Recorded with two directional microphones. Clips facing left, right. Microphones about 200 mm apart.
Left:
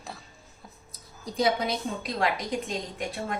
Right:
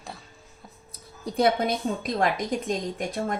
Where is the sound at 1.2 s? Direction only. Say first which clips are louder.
Right 3 dB; 55° right (ahead or behind).